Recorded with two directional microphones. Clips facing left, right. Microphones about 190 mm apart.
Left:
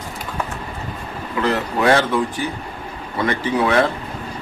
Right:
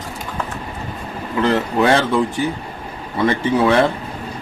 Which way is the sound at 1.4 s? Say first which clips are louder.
Right 3 dB; 30° right (ahead or behind).